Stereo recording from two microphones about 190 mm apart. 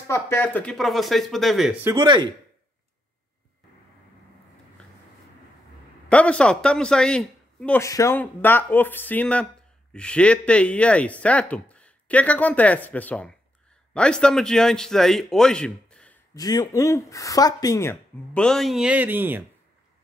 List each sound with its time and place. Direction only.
0.1 s a man's voice: 10° left (ahead or behind)
1.9 s speech: 25° right (ahead or behind)
6.0 s a man's voice: 5° left (ahead or behind)
16.3 s speech: 20° left (ahead or behind); by 19.4 s 10° right (ahead or behind)